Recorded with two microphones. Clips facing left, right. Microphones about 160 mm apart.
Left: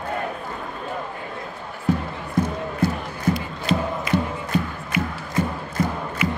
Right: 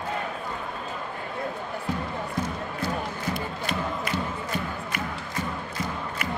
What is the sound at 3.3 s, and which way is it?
Crowd, 50° right (ahead or behind).